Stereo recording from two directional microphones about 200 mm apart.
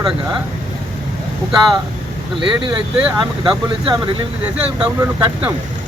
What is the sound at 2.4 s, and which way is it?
Speech, 25° right (ahead or behind).